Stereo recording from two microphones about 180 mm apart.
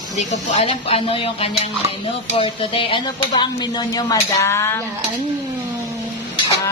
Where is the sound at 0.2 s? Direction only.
40° left (ahead or behind); by 4.8 s 15° left (ahead or behind).